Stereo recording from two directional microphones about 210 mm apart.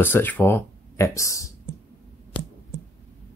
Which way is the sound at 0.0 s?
10° left (ahead or behind).